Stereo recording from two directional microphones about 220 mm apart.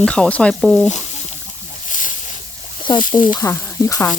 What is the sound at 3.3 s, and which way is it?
Speech, 15° left (ahead or behind).